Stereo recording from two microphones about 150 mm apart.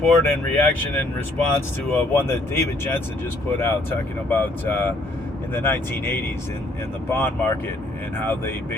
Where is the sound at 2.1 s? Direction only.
15° left (ahead or behind).